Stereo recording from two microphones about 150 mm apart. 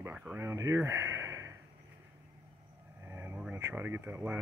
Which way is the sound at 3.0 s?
15° right (ahead or behind).